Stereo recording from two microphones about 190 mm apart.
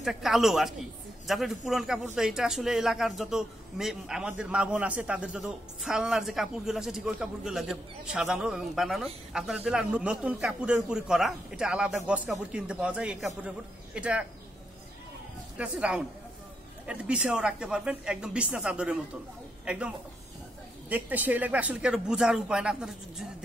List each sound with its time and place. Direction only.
0.0 s a man's voice: centre (ahead or behind)
15.5 s a man's voice: 5° right (ahead or behind)
20.9 s a man's voice: 10° right (ahead or behind)